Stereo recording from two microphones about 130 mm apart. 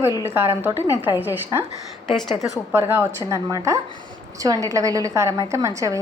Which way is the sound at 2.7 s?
20° right (ahead or behind).